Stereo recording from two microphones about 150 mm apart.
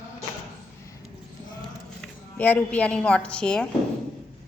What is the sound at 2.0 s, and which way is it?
A woman's voice, 10° left (ahead or behind).